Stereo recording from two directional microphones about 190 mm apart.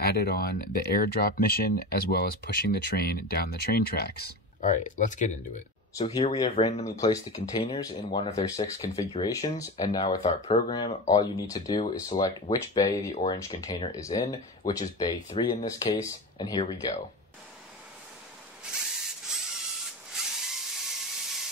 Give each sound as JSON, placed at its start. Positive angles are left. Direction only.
{"t": 0.0, "sound": "speech", "side_deg": 55}
{"t": 4.6, "sound": "speech", "side_deg": 40}
{"t": 6.0, "sound": "speech", "side_deg": 25}
{"t": 8.3, "sound": "speech", "side_deg": 15}
{"t": 10.0, "sound": "speech", "side_deg": 35}
{"t": 18.6, "sound": "drill", "side_deg": -5}